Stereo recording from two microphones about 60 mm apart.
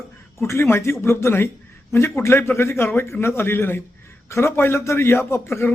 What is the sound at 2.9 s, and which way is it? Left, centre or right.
A man's voice, left.